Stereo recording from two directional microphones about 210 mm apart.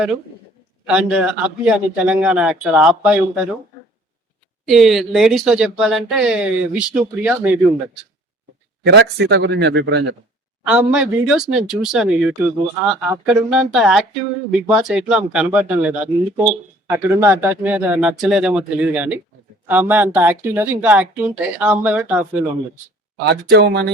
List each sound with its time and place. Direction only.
0.9 s speech: 5° right (ahead or behind)
4.6 s speech: centre (ahead or behind)
8.8 s speech: 55° right (ahead or behind)
10.7 s speech: 5° right (ahead or behind)
23.1 s speech: 55° right (ahead or behind)